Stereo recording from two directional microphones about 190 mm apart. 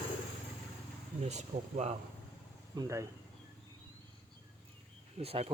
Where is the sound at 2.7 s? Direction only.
15° right (ahead or behind).